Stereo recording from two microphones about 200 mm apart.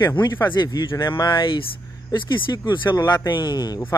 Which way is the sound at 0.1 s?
20° left (ahead or behind).